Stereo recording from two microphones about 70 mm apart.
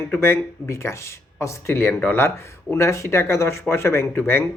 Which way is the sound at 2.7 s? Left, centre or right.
Left.